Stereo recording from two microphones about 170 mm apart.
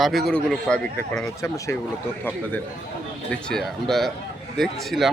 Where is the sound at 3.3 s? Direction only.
Centre (ahead or behind).